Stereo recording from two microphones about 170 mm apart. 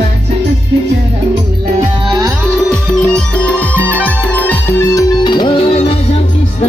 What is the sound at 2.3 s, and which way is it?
Music, centre (ahead or behind).